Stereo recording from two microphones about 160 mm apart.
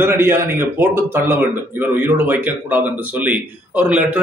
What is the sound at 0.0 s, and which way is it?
Speech, 15° right (ahead or behind).